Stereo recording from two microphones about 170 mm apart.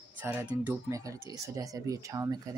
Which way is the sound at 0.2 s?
10° right (ahead or behind).